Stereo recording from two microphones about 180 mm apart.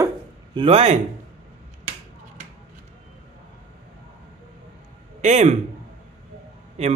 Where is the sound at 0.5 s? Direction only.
35° right (ahead or behind).